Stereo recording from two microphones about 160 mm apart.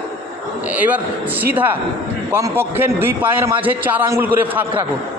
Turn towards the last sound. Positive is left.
turn(degrees=-10)  # may be behind; listen again after turning